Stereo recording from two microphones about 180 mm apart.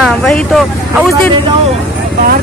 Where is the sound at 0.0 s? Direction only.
Centre (ahead or behind).